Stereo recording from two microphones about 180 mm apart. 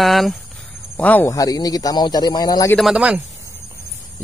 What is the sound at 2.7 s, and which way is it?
Speech, centre (ahead or behind).